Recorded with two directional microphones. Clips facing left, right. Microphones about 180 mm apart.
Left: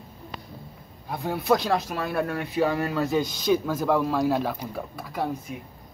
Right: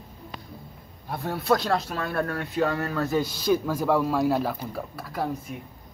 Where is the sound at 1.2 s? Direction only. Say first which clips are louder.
Left 2 dB; 15° left (ahead or behind).